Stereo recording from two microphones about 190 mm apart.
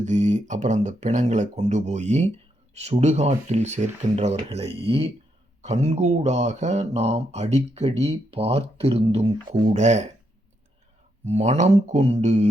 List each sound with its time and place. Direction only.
0.0 s speech: 40° right (ahead or behind)
11.3 s speech: 35° right (ahead or behind)